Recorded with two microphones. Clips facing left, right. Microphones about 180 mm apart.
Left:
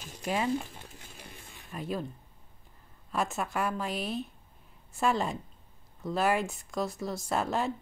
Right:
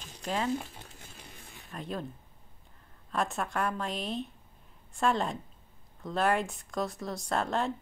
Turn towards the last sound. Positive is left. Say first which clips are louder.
# even
turn(degrees=5)  # may be behind; listen again after turning